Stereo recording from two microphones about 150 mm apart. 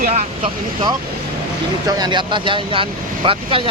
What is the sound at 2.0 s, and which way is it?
Speech, 30° right (ahead or behind).